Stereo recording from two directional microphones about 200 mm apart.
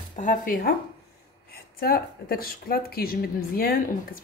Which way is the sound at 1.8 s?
50° left (ahead or behind).